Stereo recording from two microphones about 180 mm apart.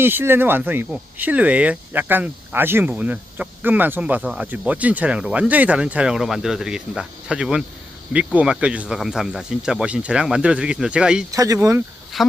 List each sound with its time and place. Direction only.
0.0 s speech: 10° right (ahead or behind)
11.3 s speech: 20° right (ahead or behind)
12.1 s speech: centre (ahead or behind)